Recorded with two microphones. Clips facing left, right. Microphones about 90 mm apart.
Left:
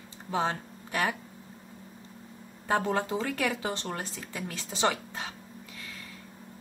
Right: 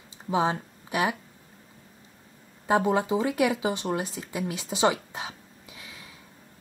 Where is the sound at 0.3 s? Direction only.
15° right (ahead or behind).